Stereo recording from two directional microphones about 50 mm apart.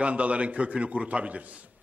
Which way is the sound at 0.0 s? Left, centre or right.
Right.